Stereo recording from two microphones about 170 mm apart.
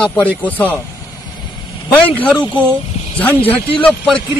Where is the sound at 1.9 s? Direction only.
10° left (ahead or behind).